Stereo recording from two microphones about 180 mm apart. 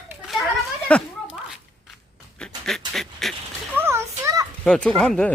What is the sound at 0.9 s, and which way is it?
Speech, 5° left (ahead or behind).